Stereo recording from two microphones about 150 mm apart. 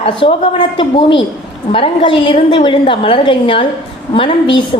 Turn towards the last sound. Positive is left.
turn(degrees=35)  # may be behind; listen again after turning